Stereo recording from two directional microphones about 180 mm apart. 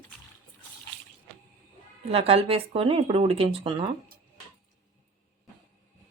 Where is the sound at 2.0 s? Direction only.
35° right (ahead or behind).